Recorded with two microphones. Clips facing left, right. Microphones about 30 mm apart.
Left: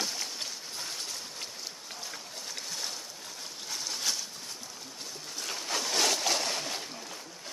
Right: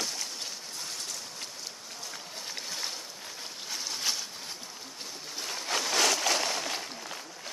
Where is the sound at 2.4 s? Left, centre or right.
Centre.